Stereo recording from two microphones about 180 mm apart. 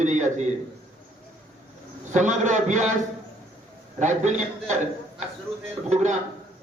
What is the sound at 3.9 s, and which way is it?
A man's voice, 40° right (ahead or behind).